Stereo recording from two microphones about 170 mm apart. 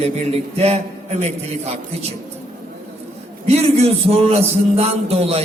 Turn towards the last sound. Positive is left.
turn(degrees=-35)  # may be behind; listen again after turning